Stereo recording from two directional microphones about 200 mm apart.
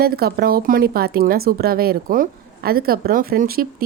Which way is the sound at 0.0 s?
50° right (ahead or behind).